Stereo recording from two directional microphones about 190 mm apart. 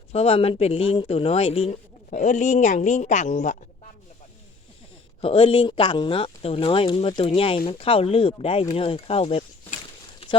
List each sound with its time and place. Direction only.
0.1 s speech: 30° left (ahead or behind)
5.2 s speech: 30° left (ahead or behind)